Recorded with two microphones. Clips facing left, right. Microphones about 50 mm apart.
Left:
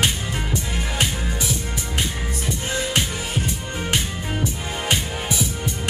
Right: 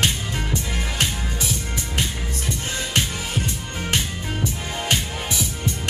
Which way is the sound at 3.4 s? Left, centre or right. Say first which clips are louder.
Left 2 dB; centre.